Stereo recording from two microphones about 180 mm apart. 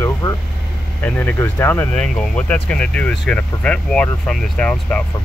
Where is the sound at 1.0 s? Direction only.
10° left (ahead or behind).